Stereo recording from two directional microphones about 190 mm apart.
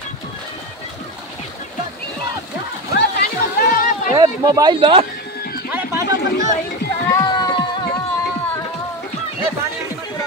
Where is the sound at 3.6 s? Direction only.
50° left (ahead or behind).